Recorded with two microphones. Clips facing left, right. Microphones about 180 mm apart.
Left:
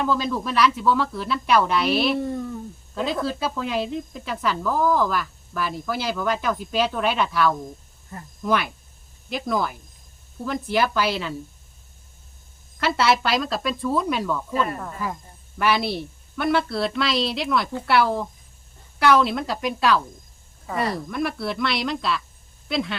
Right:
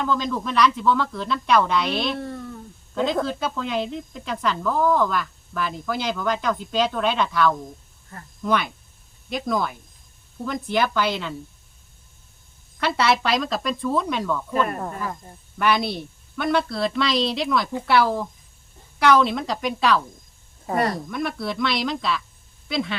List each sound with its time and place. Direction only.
0.0 s speech: 5° left (ahead or behind)
12.8 s speech: centre (ahead or behind)
15.5 s speech: 5° left (ahead or behind)
20.7 s speech: 50° right (ahead or behind)
20.9 s speech: centre (ahead or behind)